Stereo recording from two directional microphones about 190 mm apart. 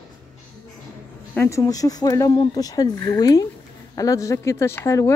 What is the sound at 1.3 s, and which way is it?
Speech, 15° left (ahead or behind).